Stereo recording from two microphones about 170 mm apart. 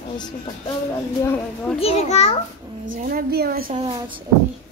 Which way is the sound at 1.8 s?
35° left (ahead or behind).